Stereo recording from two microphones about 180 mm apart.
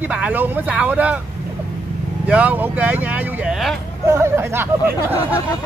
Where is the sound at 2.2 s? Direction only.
5° right (ahead or behind).